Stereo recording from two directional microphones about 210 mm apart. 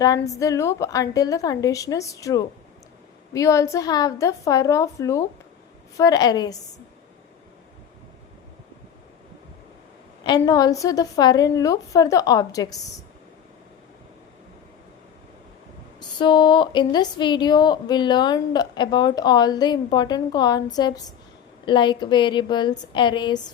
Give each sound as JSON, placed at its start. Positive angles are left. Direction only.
{"t": 0.0, "sound": "a woman's voice", "side_deg": 15}
{"t": 10.2, "sound": "a woman's voice", "side_deg": 20}
{"t": 16.0, "sound": "a woman's voice", "side_deg": 20}